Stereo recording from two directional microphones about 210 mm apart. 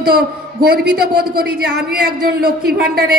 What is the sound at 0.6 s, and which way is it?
A woman's voice, 45° right (ahead or behind).